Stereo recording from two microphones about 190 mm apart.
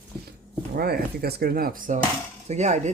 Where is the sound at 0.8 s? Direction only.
55° right (ahead or behind).